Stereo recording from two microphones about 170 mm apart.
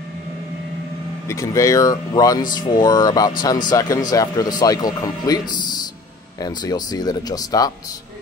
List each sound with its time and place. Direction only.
1.3 s speech: 20° left (ahead or behind)